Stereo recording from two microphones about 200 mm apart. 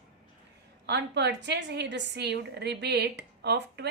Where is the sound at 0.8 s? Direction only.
55° right (ahead or behind).